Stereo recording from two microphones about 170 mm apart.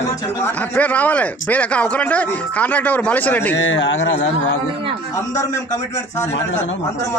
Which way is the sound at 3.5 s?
90° left.